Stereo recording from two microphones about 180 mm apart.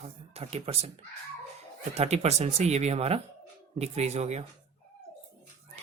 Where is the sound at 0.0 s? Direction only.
35° right (ahead or behind).